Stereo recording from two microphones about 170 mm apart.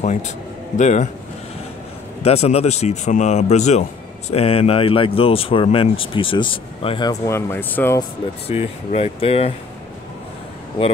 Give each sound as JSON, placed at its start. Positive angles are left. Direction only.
{"t": 0.0, "sound": "a man's voice", "side_deg": 45}
{"t": 2.2, "sound": "speech", "side_deg": 35}
{"t": 7.1, "sound": "speech", "side_deg": 15}
{"t": 8.5, "sound": "speech", "side_deg": 35}